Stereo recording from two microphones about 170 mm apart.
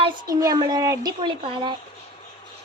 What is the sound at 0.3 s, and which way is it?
Speech, 20° right (ahead or behind).